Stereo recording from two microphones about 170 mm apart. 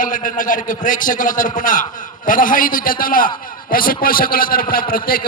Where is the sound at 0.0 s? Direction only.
50° left (ahead or behind).